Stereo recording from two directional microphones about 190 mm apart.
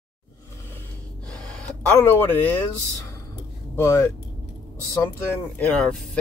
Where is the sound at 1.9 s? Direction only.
10° left (ahead or behind).